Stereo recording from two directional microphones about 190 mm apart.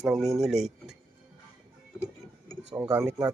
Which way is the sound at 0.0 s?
Centre (ahead or behind).